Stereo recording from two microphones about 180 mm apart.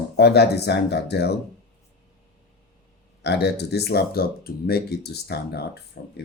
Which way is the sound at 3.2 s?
65° left (ahead or behind).